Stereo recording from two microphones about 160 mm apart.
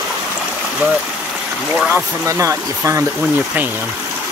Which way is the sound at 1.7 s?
15° right (ahead or behind).